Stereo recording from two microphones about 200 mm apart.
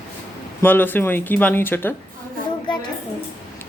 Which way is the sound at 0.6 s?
10° left (ahead or behind).